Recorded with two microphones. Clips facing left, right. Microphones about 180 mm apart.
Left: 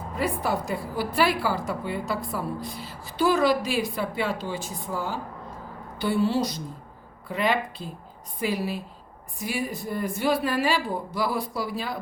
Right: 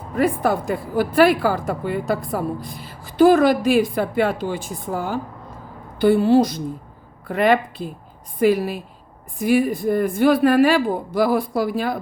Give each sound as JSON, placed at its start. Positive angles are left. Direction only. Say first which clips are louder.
{"t": 0.2, "sound": "a woman's voice", "louder": "right 8 dB", "side_deg": -55}